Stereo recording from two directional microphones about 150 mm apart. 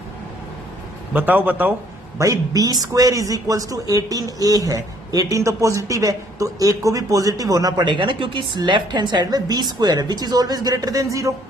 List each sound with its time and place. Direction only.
1.1 s a man's voice: 10° right (ahead or behind)